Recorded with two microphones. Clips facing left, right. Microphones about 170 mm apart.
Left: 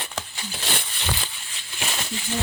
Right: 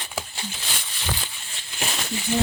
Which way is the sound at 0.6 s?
60° left (ahead or behind).